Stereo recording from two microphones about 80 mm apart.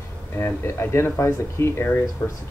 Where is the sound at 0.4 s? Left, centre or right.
Left.